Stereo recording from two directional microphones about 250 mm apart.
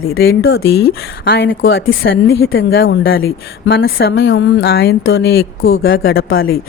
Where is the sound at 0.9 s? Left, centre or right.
Left.